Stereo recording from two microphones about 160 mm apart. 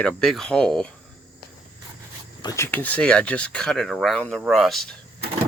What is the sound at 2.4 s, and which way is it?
Speech, 20° left (ahead or behind).